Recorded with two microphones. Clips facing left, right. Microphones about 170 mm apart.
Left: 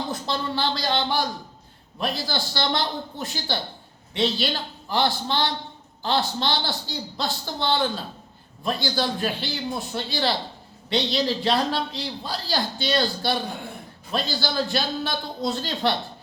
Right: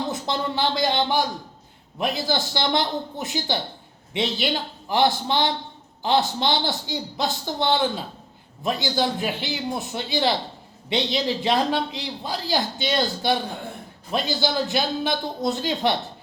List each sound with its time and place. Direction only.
0.1 s a man's voice: 15° right (ahead or behind)